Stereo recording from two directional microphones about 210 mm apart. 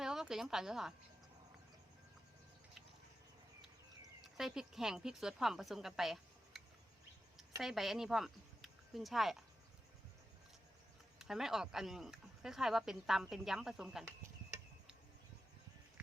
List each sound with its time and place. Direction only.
0.0 s speech: centre (ahead or behind)
4.4 s a woman's voice: centre (ahead or behind)
7.6 s speech: centre (ahead or behind)
11.2 s a woman's voice: centre (ahead or behind)